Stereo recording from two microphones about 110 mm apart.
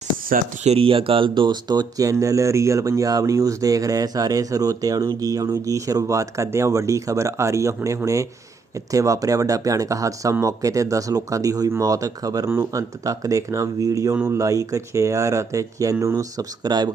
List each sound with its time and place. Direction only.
0.6 s speech: 65° right (ahead or behind); by 16.5 s 30° right (ahead or behind)
16.6 s speech: 40° right (ahead or behind)